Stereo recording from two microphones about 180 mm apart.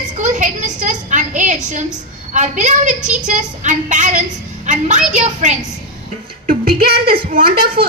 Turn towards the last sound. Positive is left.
turn(degrees=-55)  # may be behind; listen again after turning